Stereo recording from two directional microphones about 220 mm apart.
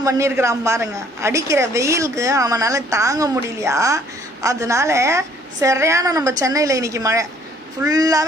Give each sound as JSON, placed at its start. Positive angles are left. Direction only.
{"t": 0.0, "sound": "a woman's voice", "side_deg": -15}